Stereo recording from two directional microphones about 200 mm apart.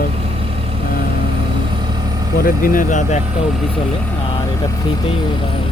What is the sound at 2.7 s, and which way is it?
Speech, 40° left (ahead or behind).